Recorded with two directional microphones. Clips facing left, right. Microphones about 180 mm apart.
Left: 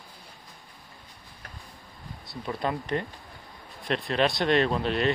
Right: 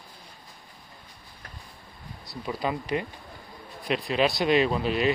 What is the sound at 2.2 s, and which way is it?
Speech, centre (ahead or behind).